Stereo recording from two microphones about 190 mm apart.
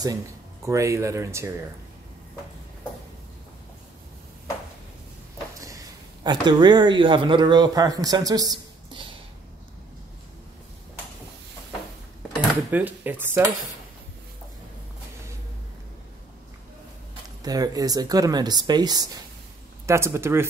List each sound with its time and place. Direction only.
0.7 s speech: 15° right (ahead or behind)
6.2 s speech: 20° right (ahead or behind)
12.7 s speech: 10° right (ahead or behind)
17.4 s speech: 20° right (ahead or behind)